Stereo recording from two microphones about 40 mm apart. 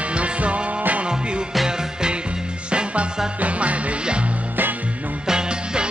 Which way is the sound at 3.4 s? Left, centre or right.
Right.